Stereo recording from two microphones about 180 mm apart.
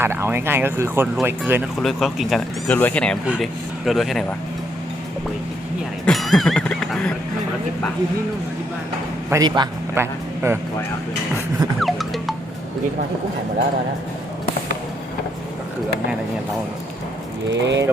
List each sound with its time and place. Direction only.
0.0 s speech: 15° right (ahead or behind)
1.8 s speech: centre (ahead or behind)
6.1 s music: centre (ahead or behind)
9.3 s a man's voice: 20° right (ahead or behind)
11.8 s music: centre (ahead or behind)
17.5 s speech: 80° right